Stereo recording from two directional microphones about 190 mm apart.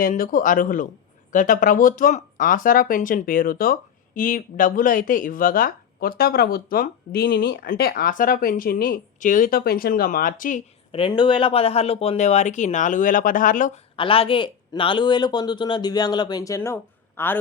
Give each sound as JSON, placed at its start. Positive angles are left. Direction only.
{"t": 0.0, "sound": "speech", "side_deg": 45}
{"t": 10.9, "sound": "speech", "side_deg": 25}
{"t": 13.9, "sound": "speech", "side_deg": 30}